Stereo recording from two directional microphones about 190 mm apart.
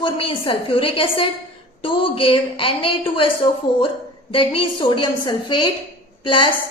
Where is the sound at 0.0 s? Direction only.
25° left (ahead or behind).